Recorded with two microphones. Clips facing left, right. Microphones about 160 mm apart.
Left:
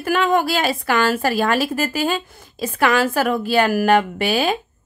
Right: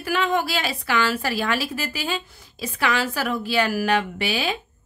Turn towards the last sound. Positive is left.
turn(degrees=50)  # may be behind; listen again after turning